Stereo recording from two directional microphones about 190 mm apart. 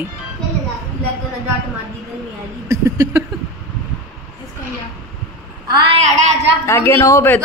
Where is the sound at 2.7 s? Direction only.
15° right (ahead or behind).